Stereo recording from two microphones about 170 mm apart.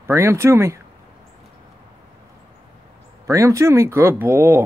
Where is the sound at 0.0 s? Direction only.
15° right (ahead or behind).